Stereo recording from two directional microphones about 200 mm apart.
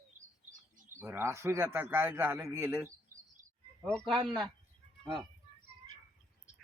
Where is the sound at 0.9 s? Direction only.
15° right (ahead or behind).